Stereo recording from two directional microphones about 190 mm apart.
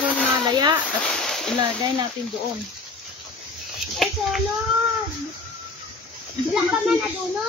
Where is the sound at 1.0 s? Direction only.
Centre (ahead or behind).